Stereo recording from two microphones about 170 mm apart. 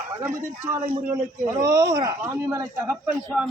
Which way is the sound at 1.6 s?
20° right (ahead or behind).